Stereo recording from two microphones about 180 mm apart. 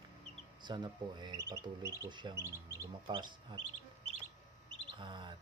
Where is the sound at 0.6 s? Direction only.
25° right (ahead or behind).